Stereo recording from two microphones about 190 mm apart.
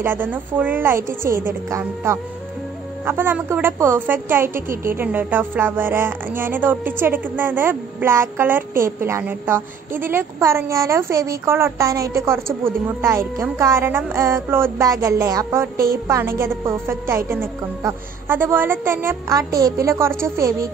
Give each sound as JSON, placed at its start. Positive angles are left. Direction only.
{"t": 0.0, "sound": "speech", "side_deg": -10}